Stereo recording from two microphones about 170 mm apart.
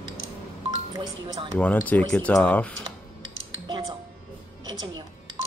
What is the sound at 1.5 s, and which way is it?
Speech, 10° left (ahead or behind).